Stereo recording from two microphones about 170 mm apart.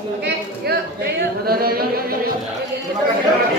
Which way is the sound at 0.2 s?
70° right (ahead or behind).